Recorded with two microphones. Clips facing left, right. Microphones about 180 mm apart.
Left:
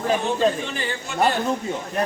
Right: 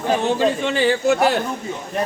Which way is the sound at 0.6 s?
90° right.